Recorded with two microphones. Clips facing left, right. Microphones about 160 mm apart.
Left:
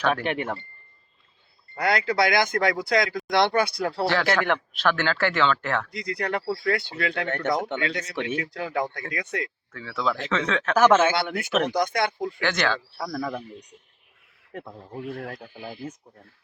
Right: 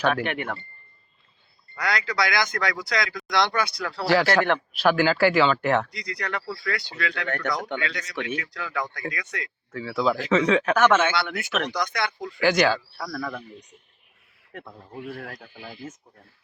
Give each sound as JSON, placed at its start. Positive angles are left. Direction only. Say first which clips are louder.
{"t": 0.1, "sound": "speech", "louder": "left 1 dB", "side_deg": 30}
{"t": 1.8, "sound": "speech", "louder": "left 4 dB", "side_deg": 55}
{"t": 4.0, "sound": "speech", "louder": "right 4 dB", "side_deg": -10}
{"t": 5.9, "sound": "speech", "louder": "left 4 dB", "side_deg": 55}
{"t": 6.3, "sound": "speech", "louder": "left 6 dB", "side_deg": 30}
{"t": 9.7, "sound": "speech", "louder": "right 4 dB", "side_deg": -5}
{"t": 10.8, "sound": "speech", "louder": "left 7 dB", "side_deg": 30}
{"t": 11.8, "sound": "speech", "louder": "left 4 dB", "side_deg": 50}
{"t": 12.4, "sound": "speech", "louder": "right 6 dB", "side_deg": -10}
{"t": 12.9, "sound": "speech", "louder": "left 2 dB", "side_deg": 25}
{"t": 14.6, "sound": "a man's voice", "louder": "left 3 dB", "side_deg": 15}
{"t": 14.9, "sound": "speech", "louder": "left 2 dB", "side_deg": 25}